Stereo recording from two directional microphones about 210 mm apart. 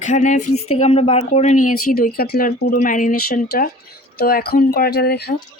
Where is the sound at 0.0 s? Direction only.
35° left (ahead or behind).